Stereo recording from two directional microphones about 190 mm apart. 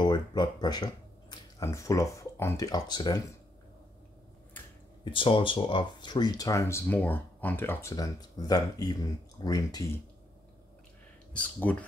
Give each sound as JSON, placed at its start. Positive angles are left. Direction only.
{"t": 0.0, "sound": "speech", "side_deg": 25}
{"t": 5.1, "sound": "speech", "side_deg": 25}
{"t": 11.3, "sound": "speech", "side_deg": 10}